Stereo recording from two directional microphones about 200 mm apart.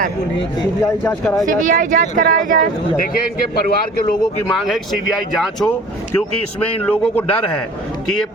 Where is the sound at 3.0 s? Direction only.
50° left (ahead or behind).